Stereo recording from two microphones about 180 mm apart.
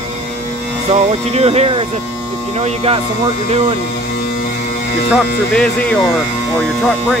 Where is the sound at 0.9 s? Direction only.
35° right (ahead or behind).